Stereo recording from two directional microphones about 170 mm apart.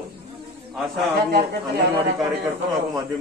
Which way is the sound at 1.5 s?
80° right.